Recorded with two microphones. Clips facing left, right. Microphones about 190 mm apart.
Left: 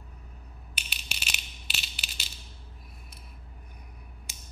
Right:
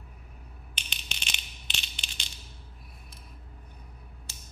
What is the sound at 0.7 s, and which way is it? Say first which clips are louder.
Coin: left 1 dB; 5° left (ahead or behind).